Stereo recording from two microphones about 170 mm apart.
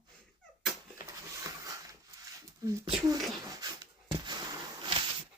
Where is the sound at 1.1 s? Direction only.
20° right (ahead or behind).